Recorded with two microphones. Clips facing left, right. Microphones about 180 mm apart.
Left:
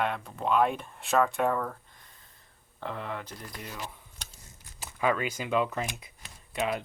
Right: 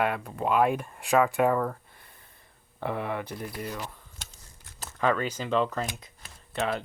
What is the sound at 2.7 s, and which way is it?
Speech, 10° right (ahead or behind).